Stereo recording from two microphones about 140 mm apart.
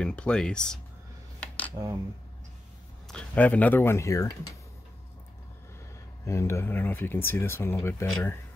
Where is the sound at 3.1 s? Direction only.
5° left (ahead or behind); by 4.6 s 25° left (ahead or behind).